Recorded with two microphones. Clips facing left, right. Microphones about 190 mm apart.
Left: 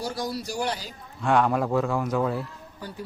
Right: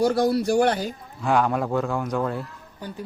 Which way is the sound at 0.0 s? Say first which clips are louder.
Right 11 dB; 60° right (ahead or behind).